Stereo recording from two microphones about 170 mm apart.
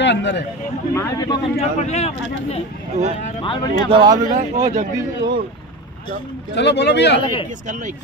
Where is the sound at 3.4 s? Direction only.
30° left (ahead or behind).